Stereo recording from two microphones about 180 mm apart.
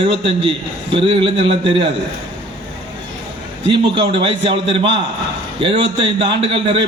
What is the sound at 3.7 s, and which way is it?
A man's voice, 30° right (ahead or behind).